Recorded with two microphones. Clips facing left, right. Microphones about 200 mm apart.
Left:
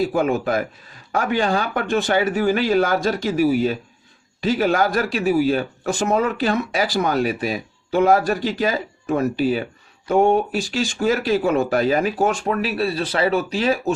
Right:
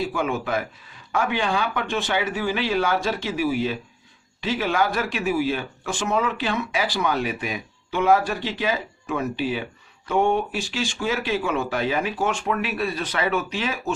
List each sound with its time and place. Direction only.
0.0 s speech: 40° left (ahead or behind)